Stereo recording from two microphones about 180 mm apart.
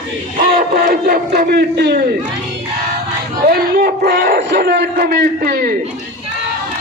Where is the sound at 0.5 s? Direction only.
50° right (ahead or behind).